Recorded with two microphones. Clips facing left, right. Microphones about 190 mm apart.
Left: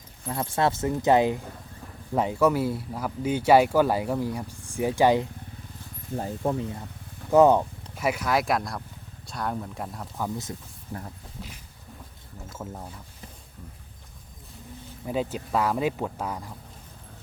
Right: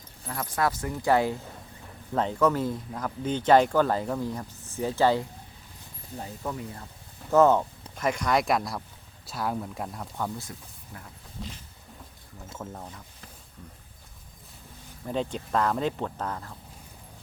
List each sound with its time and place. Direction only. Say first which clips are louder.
0.3 s speech: left 3 dB; 25° left (ahead or behind)
6.4 s speech: left 7 dB; 30° left (ahead or behind)
7.3 s speech: left 2 dB; 15° left (ahead or behind)
12.5 s speech: left 1 dB; 5° left (ahead or behind)
15.0 s speech: left 1 dB; 5° left (ahead or behind)